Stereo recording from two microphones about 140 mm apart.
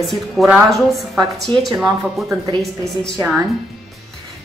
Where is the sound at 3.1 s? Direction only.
15° right (ahead or behind).